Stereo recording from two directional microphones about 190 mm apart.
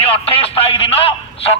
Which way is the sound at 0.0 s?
30° left (ahead or behind).